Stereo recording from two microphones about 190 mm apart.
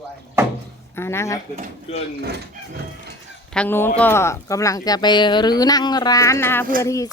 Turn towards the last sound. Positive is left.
turn(degrees=15)  # may be behind; listen again after turning